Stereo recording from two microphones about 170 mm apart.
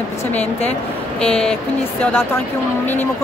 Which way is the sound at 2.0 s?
10° left (ahead or behind).